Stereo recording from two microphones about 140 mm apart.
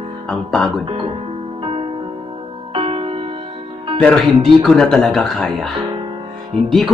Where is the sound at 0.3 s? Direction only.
5° left (ahead or behind).